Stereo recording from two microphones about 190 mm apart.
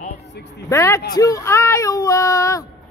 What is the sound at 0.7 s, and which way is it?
Speech, 15° left (ahead or behind).